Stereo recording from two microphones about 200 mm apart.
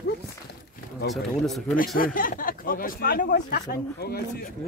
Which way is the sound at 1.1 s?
Centre (ahead or behind).